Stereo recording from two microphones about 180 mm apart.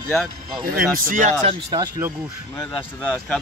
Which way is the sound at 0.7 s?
50° right (ahead or behind).